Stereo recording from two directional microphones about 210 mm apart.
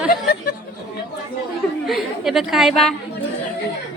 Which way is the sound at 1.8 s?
Centre (ahead or behind).